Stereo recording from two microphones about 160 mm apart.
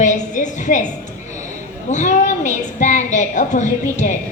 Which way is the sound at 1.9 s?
50° left (ahead or behind).